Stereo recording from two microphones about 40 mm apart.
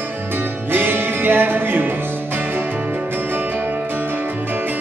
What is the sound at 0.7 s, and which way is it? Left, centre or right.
Music, right.